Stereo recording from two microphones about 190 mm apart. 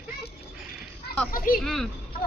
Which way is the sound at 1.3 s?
50° left (ahead or behind).